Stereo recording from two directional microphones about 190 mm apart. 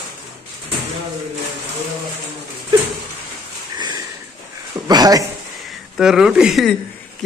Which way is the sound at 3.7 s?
20° right (ahead or behind).